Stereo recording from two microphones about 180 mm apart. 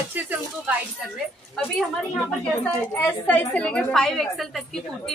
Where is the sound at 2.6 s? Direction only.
10° left (ahead or behind).